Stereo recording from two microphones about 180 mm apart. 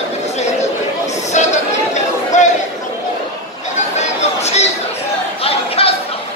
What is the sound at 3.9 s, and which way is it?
Chatter, 35° left (ahead or behind).